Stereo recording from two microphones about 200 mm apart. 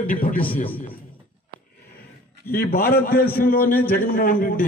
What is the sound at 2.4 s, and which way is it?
Speech, 10° left (ahead or behind).